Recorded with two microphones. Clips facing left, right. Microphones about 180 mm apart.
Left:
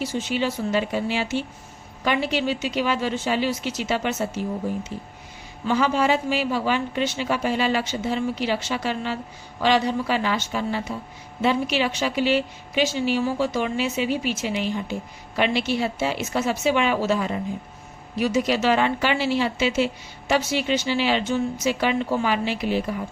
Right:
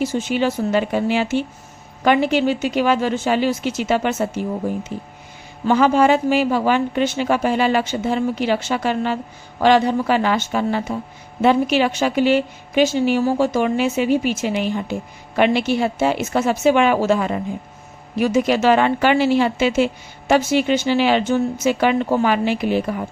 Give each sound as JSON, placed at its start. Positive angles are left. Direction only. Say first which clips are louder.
{"t": 0.0, "sound": "speech", "louder": "right 5 dB", "side_deg": -50}
{"t": 5.6, "sound": "speech", "louder": "right 6 dB", "side_deg": -50}